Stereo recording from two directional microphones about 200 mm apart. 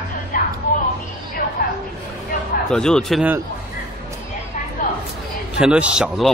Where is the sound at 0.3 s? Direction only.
40° left (ahead or behind).